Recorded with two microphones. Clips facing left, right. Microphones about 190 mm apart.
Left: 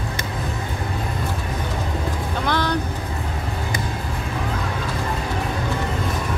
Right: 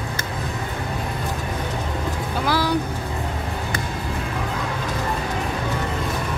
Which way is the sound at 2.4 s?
5° right (ahead or behind).